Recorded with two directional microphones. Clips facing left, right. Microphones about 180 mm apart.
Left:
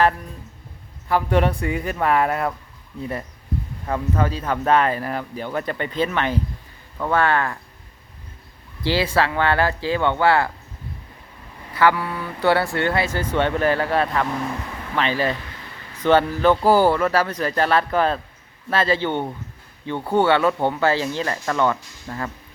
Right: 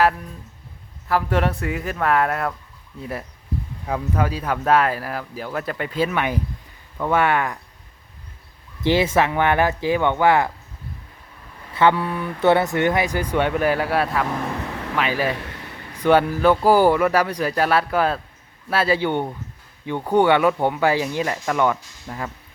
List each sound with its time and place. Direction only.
1.0 s speech: centre (ahead or behind)
3.8 s speech: 10° right (ahead or behind)
8.8 s speech: 20° right (ahead or behind)
11.7 s speech: 25° right (ahead or behind); by 22.3 s 5° right (ahead or behind)